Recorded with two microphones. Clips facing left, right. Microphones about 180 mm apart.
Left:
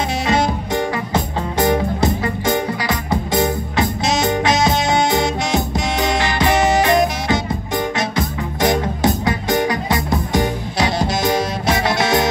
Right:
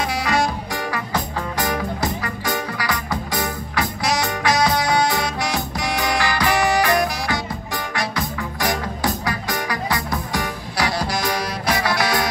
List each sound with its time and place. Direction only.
0.2 s music: 25° left (ahead or behind)